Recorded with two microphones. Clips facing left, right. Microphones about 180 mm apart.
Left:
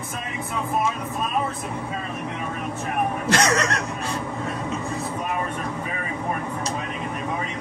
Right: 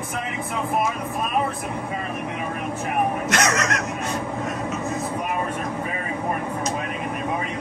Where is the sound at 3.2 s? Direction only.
30° left (ahead or behind).